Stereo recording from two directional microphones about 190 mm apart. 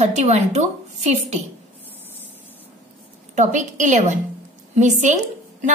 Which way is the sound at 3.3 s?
40° right (ahead or behind).